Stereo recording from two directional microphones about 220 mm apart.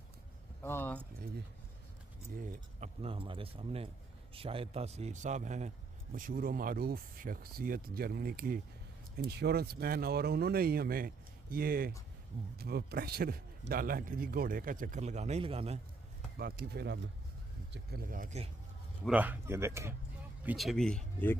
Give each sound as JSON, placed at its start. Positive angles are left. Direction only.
{"t": 0.6, "sound": "keys jangling", "side_deg": 10}
{"t": 2.3, "sound": "a man's voice", "side_deg": -35}
{"t": 16.3, "sound": "a man's voice", "side_deg": -45}
{"t": 19.0, "sound": "speech", "side_deg": -5}
{"t": 20.4, "sound": "speech", "side_deg": 0}